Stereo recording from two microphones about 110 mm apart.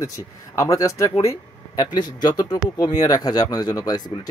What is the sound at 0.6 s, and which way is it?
A man's voice, 30° left (ahead or behind).